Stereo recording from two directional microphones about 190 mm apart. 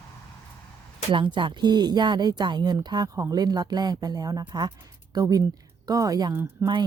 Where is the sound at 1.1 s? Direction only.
25° right (ahead or behind).